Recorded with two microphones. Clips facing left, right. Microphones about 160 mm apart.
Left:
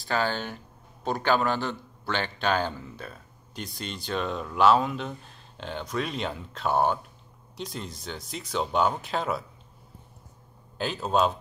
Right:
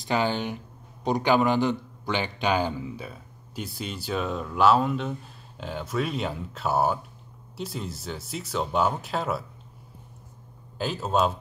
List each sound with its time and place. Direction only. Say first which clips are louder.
0.0 s a man's voice: right 2 dB; 15° right (ahead or behind)
10.8 s a man's voice: even; centre (ahead or behind)